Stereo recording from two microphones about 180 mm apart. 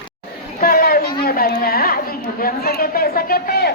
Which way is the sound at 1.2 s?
55° left (ahead or behind).